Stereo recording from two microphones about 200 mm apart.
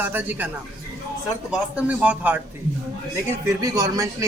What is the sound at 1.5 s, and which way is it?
Speech, 5° right (ahead or behind).